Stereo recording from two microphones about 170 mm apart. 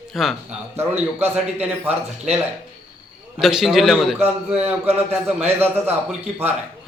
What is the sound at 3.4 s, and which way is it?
Speech, centre (ahead or behind).